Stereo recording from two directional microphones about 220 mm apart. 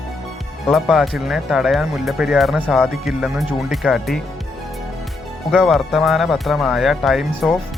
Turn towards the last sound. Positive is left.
turn(degrees=0)  # may be behind; listen again after turning